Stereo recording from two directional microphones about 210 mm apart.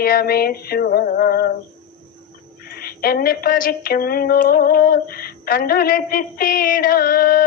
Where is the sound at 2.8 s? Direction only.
45° left (ahead or behind).